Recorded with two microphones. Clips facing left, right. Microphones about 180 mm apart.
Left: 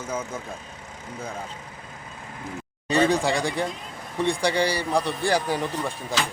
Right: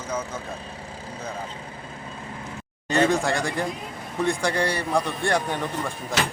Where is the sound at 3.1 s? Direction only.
Centre (ahead or behind).